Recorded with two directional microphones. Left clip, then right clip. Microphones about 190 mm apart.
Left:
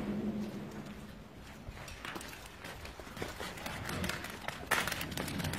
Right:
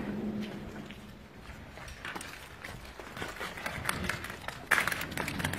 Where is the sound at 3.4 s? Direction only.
10° left (ahead or behind).